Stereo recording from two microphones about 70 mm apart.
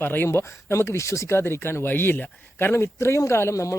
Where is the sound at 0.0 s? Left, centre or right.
Left.